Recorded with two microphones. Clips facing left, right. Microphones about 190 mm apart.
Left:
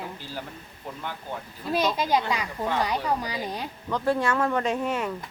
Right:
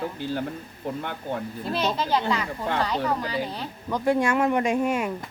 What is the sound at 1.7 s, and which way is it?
Speech, 15° left (ahead or behind).